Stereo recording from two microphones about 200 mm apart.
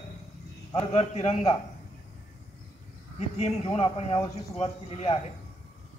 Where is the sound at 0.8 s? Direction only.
30° left (ahead or behind).